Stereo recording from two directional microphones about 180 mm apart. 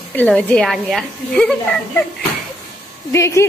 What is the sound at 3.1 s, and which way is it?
Speech, 15° left (ahead or behind).